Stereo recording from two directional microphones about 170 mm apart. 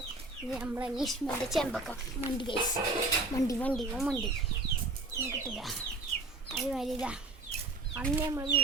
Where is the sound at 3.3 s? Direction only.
20° left (ahead or behind).